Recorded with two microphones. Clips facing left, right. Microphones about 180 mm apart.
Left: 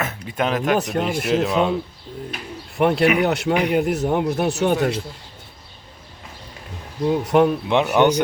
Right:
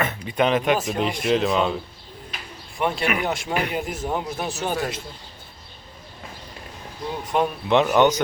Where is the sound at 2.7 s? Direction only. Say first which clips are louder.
Left 7 dB; 65° left (ahead or behind).